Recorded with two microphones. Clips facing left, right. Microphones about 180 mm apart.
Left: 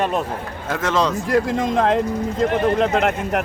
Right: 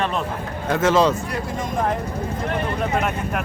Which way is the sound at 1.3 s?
90° left.